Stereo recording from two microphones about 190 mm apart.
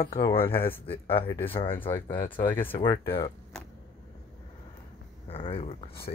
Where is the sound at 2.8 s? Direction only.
25° left (ahead or behind).